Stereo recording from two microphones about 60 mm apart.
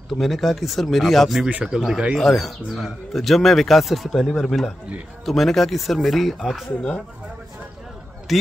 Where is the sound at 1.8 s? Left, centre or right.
Centre.